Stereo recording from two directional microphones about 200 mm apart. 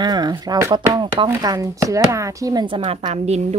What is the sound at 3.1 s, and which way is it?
Speech, 35° right (ahead or behind).